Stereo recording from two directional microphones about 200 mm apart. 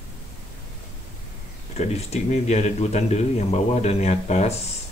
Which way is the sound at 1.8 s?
35° left (ahead or behind).